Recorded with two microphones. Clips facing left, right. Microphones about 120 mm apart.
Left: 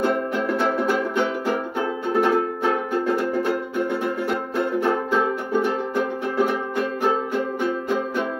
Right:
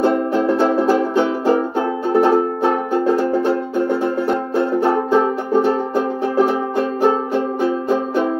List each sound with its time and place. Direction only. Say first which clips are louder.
0.0 s music: right 6 dB; 30° right (ahead or behind)